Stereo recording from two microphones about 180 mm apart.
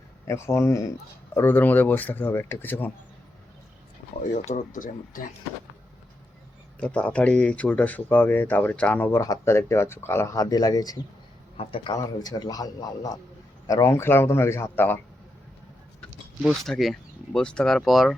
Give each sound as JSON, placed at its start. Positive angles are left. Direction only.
{"t": 0.3, "sound": "speech", "side_deg": 15}
{"t": 4.4, "sound": "speech", "side_deg": 45}
{"t": 6.7, "sound": "speech", "side_deg": 5}
{"t": 11.5, "sound": "a man's voice", "side_deg": 30}
{"t": 16.4, "sound": "speech", "side_deg": 0}